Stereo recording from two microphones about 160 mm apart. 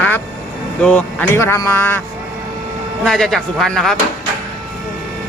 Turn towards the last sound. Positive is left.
turn(degrees=0)  # may be behind; listen again after turning